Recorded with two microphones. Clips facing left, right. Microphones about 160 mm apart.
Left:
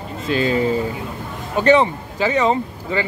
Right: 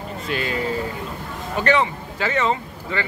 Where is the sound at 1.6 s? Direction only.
20° left (ahead or behind).